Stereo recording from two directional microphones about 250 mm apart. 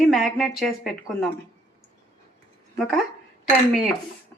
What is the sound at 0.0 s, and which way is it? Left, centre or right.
Speech, centre.